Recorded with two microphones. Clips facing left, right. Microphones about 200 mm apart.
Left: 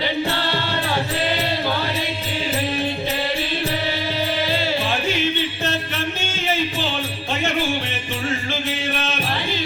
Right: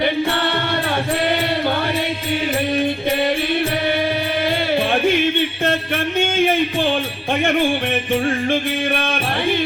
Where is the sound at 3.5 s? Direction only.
55° right (ahead or behind).